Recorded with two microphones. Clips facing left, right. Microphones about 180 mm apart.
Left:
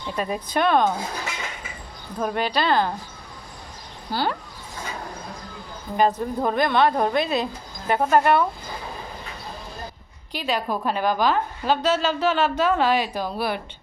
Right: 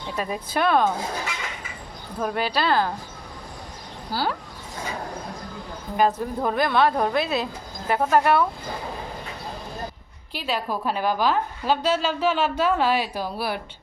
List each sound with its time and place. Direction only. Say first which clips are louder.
0.1 s a woman's voice: left 2 dB; 5° right (ahead or behind)
2.2 s a woman's voice: left 1 dB; 5° right (ahead or behind)
4.1 s a woman's voice: left 1 dB; 5° right (ahead or behind)
6.0 s a woman's voice: left 1 dB; 5° right (ahead or behind)
10.4 s a woman's voice: left 2 dB; 5° right (ahead or behind)